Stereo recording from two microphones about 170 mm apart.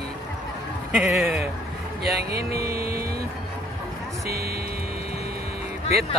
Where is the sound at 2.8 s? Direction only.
60° right (ahead or behind).